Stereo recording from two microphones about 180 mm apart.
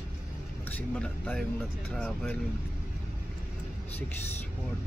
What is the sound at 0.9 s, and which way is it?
Speech, 5° left (ahead or behind).